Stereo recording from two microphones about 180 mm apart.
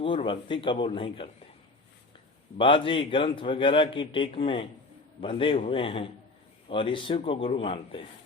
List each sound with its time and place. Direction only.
0.0 s a man's voice: 30° left (ahead or behind)
2.6 s a man's voice: 30° left (ahead or behind)